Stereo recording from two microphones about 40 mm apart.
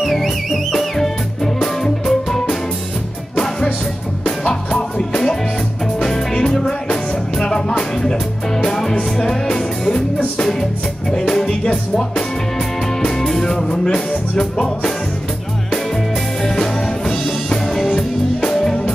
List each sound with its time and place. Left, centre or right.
0.0 s music: centre
4.5 s music: centre
16.4 s music: centre